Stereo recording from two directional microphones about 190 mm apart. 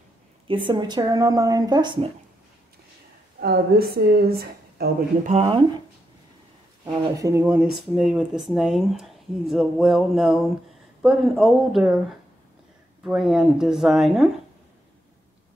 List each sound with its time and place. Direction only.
0.5 s speech: 25° right (ahead or behind)
3.3 s a woman's voice: 55° right (ahead or behind)
5.3 s speech: 30° right (ahead or behind)
6.9 s speech: 15° right (ahead or behind); by 14.3 s centre (ahead or behind)